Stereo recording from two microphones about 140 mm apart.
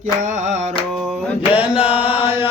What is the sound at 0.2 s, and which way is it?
Music, 65° right (ahead or behind).